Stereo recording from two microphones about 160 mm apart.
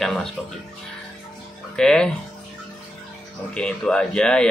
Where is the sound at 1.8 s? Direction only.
5° left (ahead or behind).